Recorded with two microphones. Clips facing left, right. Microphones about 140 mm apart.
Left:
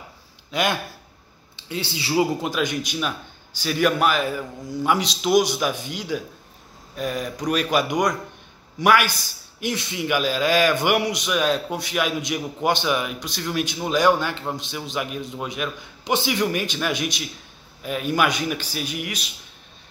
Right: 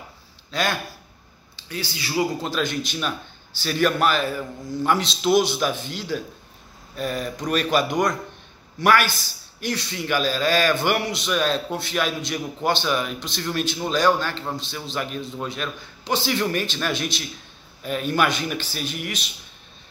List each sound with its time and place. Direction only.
0.5 s speech: 15° left (ahead or behind)
2.4 s a man's voice: 15° left (ahead or behind)